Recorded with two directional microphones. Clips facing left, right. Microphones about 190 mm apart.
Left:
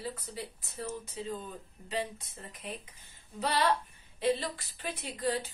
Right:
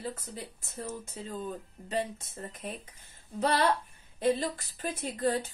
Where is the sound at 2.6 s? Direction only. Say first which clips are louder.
Right 1 dB; 45° right (ahead or behind).